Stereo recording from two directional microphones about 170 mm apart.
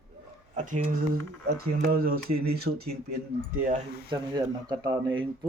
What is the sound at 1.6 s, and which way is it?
Speech, 60° right (ahead or behind).